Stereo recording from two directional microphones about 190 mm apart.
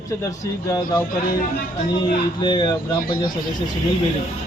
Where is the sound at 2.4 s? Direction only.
20° left (ahead or behind).